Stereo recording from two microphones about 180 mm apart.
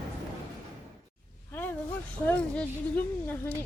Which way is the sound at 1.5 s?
10° left (ahead or behind).